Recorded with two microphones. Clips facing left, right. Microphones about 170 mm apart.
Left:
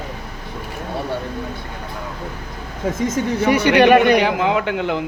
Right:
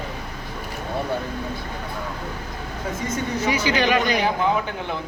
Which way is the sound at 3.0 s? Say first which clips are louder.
Left 6 dB; 75° left (ahead or behind).